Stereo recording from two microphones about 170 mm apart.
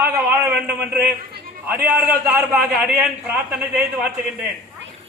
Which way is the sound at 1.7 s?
15° right (ahead or behind).